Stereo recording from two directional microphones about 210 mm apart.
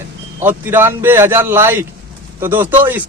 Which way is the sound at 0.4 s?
10° right (ahead or behind).